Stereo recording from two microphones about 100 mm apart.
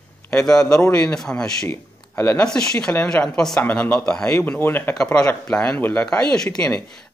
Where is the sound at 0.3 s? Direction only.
10° left (ahead or behind).